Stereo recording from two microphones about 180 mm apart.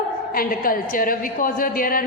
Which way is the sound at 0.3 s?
55° left (ahead or behind).